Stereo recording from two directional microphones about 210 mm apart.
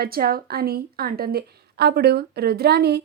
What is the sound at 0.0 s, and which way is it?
A woman's voice, 45° right (ahead or behind).